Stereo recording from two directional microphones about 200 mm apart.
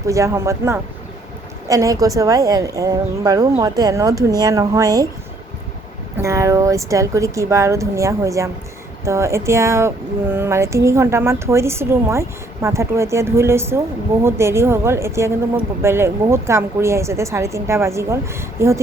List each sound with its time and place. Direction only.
0.1 s speech: 15° right (ahead or behind)
6.1 s speech: 15° right (ahead or behind)